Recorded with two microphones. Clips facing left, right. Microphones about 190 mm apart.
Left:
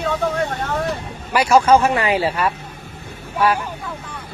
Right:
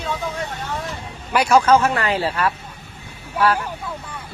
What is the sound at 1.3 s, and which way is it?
Speech, 5° left (ahead or behind).